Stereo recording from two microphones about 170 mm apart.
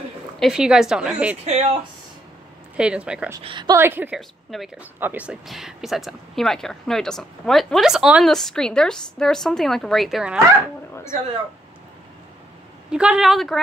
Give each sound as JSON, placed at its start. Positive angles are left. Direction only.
{"t": 0.4, "sound": "speech", "side_deg": -5}
{"t": 1.4, "sound": "speech", "side_deg": -40}
{"t": 2.8, "sound": "speech", "side_deg": -5}
{"t": 3.3, "sound": "a woman's voice", "side_deg": -25}
{"t": 3.7, "sound": "speech", "side_deg": -15}
{"t": 4.5, "sound": "speech", "side_deg": 0}
{"t": 12.9, "sound": "speech", "side_deg": -5}